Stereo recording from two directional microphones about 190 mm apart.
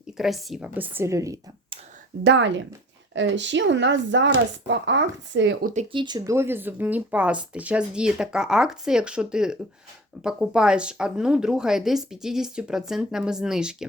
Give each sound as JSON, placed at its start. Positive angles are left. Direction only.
{"t": 0.2, "sound": "speech", "side_deg": 0}
{"t": 2.2, "sound": "speech", "side_deg": -70}
{"t": 5.9, "sound": "a woman's voice", "side_deg": -25}